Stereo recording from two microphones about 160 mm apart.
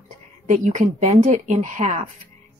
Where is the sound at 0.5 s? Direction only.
50° right (ahead or behind).